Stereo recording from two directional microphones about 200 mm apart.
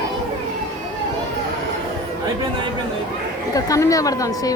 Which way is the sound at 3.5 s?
15° left (ahead or behind).